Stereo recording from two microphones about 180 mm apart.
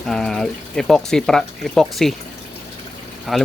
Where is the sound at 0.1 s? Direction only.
5° left (ahead or behind).